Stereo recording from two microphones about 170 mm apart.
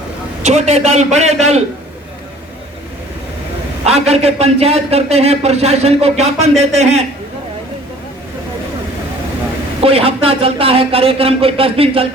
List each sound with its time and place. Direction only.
0.4 s speech: 40° right (ahead or behind)
3.8 s speech: 40° right (ahead or behind)
9.8 s speech: 35° right (ahead or behind)